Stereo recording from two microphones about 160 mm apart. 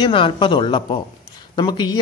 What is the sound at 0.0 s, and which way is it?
Speech, 30° left (ahead or behind).